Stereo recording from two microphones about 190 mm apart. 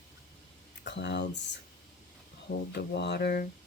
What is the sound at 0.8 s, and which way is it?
Speech, 65° left (ahead or behind).